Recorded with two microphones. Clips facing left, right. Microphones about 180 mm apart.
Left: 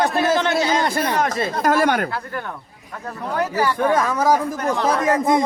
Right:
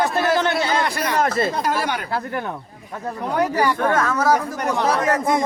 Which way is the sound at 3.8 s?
15° left (ahead or behind).